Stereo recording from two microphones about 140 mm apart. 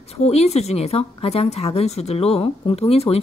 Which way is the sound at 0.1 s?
50° left (ahead or behind).